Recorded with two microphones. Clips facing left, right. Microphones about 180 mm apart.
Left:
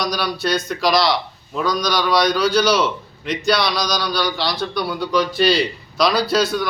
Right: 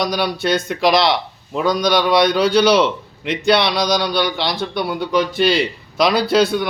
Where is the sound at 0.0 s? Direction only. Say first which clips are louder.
Right 3 dB; 25° right (ahead or behind).